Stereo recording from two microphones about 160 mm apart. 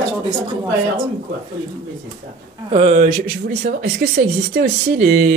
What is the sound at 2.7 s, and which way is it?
Speech, 45° right (ahead or behind).